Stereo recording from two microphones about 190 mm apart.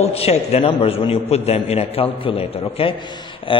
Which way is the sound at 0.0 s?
35° left (ahead or behind).